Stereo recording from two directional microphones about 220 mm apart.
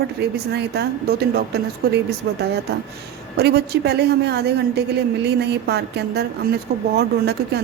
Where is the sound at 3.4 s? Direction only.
45° right (ahead or behind).